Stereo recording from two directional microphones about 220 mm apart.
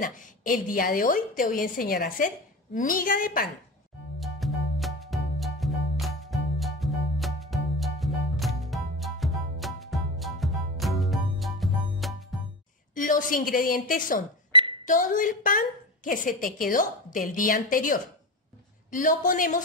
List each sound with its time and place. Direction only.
0.0 s a woman's voice: 35° left (ahead or behind)
4.2 s music: centre (ahead or behind)
12.9 s a woman's voice: 35° left (ahead or behind)
14.5 s a sound: 20° right (ahead or behind)
14.9 s a woman's voice: 40° left (ahead or behind)